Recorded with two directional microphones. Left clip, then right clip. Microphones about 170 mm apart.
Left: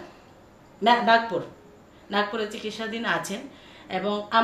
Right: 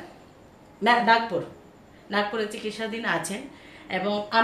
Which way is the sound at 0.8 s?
10° left (ahead or behind).